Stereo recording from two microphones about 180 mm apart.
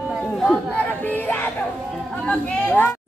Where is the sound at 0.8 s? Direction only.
10° left (ahead or behind).